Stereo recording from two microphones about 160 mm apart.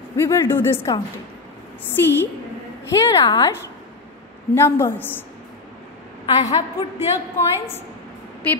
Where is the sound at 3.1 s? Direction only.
25° left (ahead or behind).